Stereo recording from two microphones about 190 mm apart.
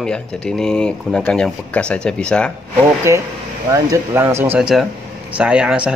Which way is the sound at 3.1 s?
15° right (ahead or behind).